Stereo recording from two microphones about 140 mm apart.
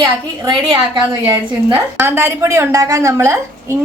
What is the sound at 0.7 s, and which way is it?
Speech, 30° right (ahead or behind).